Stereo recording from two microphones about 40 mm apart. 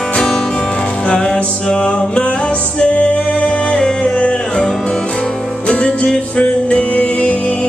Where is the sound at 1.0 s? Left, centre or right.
Left.